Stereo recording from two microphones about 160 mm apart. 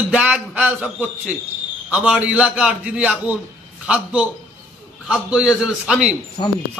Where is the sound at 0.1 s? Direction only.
10° right (ahead or behind).